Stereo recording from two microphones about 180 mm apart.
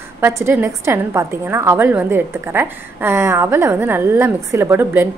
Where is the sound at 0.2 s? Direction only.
15° right (ahead or behind).